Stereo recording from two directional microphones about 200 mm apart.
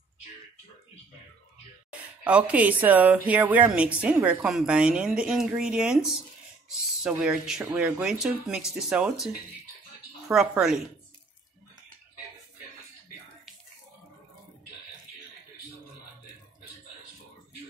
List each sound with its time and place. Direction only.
1.9 s speech: 5° right (ahead or behind)
10.3 s speech: centre (ahead or behind)